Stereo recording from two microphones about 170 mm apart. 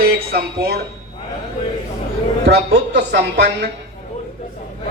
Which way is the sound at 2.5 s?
80° right.